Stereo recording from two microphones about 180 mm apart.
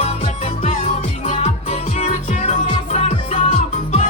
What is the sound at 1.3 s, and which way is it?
Music, 40° left (ahead or behind).